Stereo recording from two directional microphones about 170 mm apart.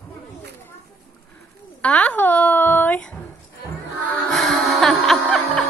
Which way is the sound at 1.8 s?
10° left (ahead or behind).